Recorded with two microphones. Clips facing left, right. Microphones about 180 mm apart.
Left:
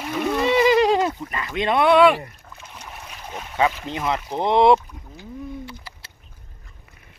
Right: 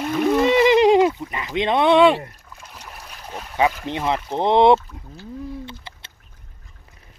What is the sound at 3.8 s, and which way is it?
Speech, 25° right (ahead or behind).